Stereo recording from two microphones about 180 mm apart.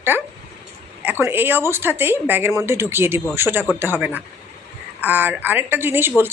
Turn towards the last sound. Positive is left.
turn(degrees=-10)  # may be behind; listen again after turning